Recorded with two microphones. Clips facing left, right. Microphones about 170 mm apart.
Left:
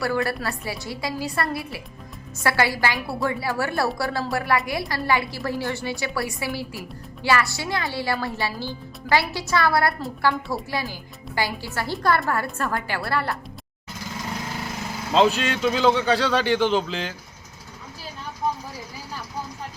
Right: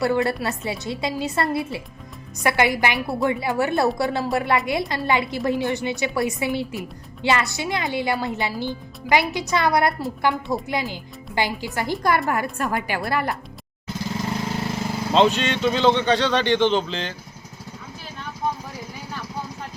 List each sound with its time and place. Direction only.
0.0 s a woman's voice: 20° right (ahead or behind)
15.1 s speech: 5° left (ahead or behind)